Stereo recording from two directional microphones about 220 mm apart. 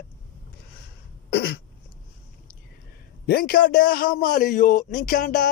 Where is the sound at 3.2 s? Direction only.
45° left (ahead or behind).